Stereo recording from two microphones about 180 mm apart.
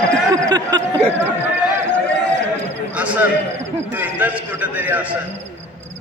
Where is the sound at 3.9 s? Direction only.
10° right (ahead or behind).